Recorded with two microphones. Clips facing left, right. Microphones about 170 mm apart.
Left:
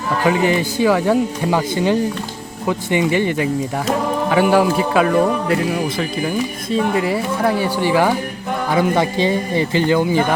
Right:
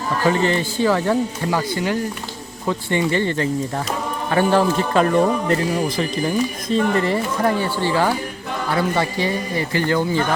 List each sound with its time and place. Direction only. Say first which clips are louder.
0.2 s speech: left 2 dB; 15° left (ahead or behind)